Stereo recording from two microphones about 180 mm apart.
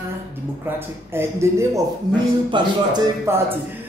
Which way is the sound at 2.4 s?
25° right (ahead or behind).